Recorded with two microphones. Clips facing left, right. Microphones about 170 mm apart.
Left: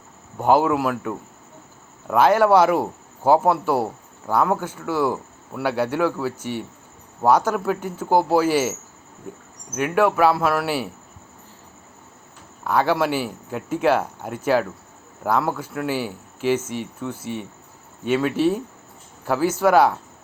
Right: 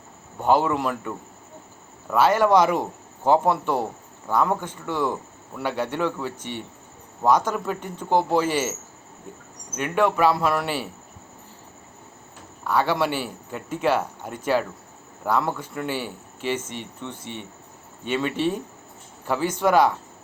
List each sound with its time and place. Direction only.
0.3 s speech: 10° left (ahead or behind)
9.7 s speech: 5° left (ahead or behind)
12.6 s speech: 10° left (ahead or behind)